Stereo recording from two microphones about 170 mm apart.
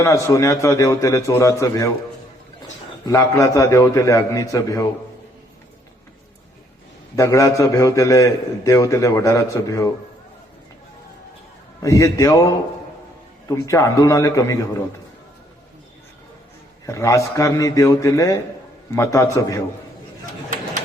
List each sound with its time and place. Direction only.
0.0 s a man's voice: 20° left (ahead or behind)
3.1 s a man's voice: 20° left (ahead or behind)
7.2 s a man's voice: 20° left (ahead or behind)
11.8 s a man's voice: 20° left (ahead or behind)
13.6 s a man's voice: 20° left (ahead or behind)
16.8 s a man's voice: 20° left (ahead or behind)